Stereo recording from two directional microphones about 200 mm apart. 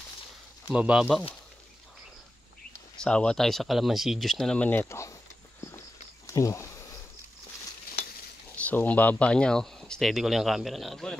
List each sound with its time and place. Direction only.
0.7 s speech: 5° right (ahead or behind)
3.0 s speech: 5° left (ahead or behind)
6.2 s a sound: 15° left (ahead or behind)
8.5 s speech: 5° left (ahead or behind)